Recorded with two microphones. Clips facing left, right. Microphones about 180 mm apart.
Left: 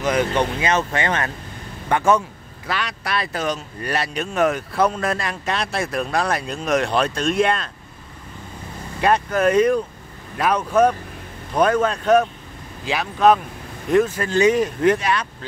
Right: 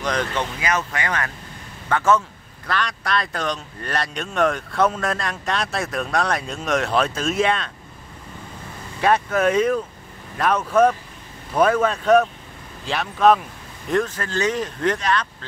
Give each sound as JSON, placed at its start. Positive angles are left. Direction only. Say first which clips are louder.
{"t": 0.0, "sound": "speech", "louder": "left 5 dB", "side_deg": 10}
{"t": 0.6, "sound": "speech", "louder": "left 4 dB", "side_deg": 25}
{"t": 9.0, "sound": "speech", "louder": "left 1 dB", "side_deg": 0}